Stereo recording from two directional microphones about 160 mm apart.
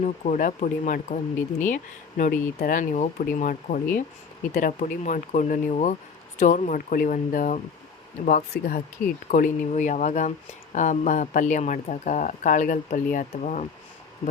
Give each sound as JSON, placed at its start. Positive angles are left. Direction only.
{"t": 0.0, "sound": "speech", "side_deg": 55}